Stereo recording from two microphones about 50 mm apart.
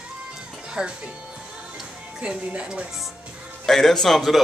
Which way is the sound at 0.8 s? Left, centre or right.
Centre.